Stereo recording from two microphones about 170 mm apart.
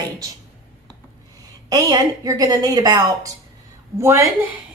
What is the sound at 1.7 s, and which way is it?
A woman's voice, 20° right (ahead or behind).